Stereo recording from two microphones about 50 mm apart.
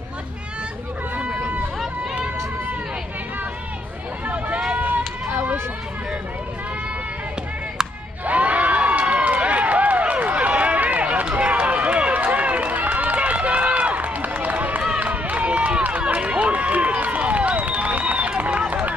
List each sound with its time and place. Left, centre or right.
1.1 s run: right
4.3 s vehicle: right
8.3 s run: right
18.7 s honk: right